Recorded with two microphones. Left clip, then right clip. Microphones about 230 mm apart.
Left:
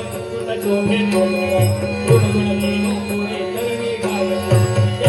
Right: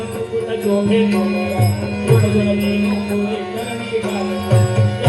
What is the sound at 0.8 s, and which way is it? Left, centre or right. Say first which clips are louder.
Music: even; left.